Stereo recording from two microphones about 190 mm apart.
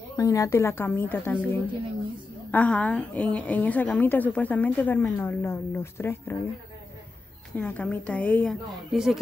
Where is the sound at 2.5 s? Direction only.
5° left (ahead or behind).